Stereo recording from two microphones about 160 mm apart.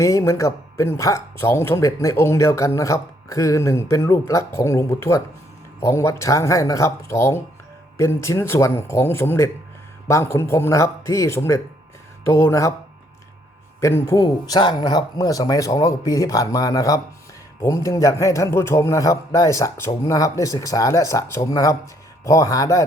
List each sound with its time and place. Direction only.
0.0 s speech: 20° left (ahead or behind)
13.8 s speech: 15° left (ahead or behind)